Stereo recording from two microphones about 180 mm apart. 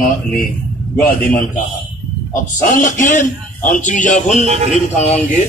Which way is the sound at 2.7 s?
45° left (ahead or behind).